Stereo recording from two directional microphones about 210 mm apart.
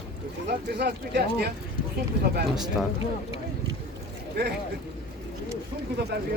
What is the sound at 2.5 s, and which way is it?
Speech, centre (ahead or behind).